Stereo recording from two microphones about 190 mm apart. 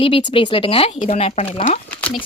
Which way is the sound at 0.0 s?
25° left (ahead or behind).